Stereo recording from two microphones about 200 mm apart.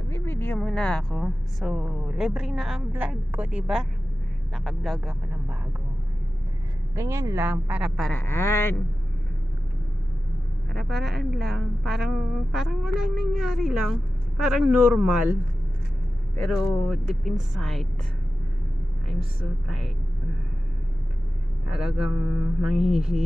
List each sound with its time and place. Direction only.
0.1 s a woman's voice: 10° left (ahead or behind)
7.0 s a woman's voice: 15° right (ahead or behind)
8.1 s a sound: 10° left (ahead or behind)
10.7 s a woman's voice: centre (ahead or behind)
16.3 s a woman's voice: 5° left (ahead or behind)
21.6 s a woman's voice: centre (ahead or behind)
22.8 s speech: 30° right (ahead or behind)